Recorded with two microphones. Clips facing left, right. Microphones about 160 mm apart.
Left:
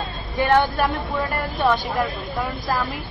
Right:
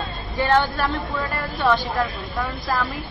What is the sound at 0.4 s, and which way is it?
Speech, 15° left (ahead or behind).